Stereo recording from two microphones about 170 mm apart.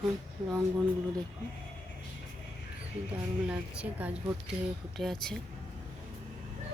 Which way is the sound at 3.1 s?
10° right (ahead or behind).